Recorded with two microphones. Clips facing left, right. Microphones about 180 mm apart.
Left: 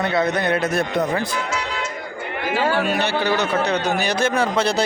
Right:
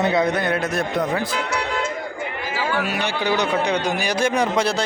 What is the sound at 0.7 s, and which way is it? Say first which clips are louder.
Speech: left 1 dB; centre (ahead or behind).